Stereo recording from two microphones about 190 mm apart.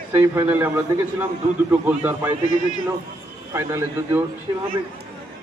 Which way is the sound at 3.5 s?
15° right (ahead or behind).